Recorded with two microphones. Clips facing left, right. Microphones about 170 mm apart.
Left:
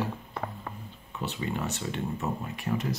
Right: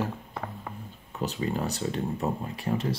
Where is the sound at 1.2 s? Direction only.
40° right (ahead or behind).